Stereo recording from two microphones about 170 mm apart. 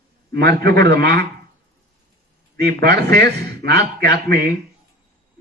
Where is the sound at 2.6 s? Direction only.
75° right (ahead or behind).